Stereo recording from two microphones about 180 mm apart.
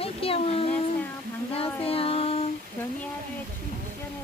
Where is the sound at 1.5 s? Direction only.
30° left (ahead or behind).